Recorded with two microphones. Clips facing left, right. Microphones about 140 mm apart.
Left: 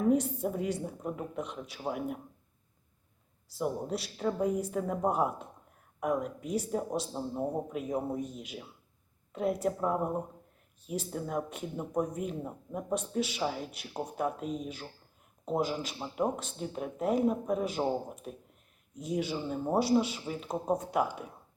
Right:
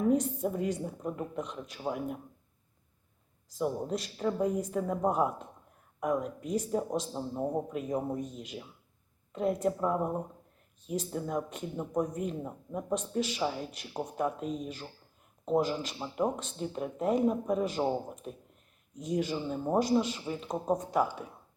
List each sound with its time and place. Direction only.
0.1 s speech: 5° left (ahead or behind)
3.6 s speech: 5° left (ahead or behind)